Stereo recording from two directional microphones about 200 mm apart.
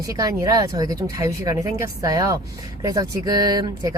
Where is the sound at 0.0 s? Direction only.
15° right (ahead or behind).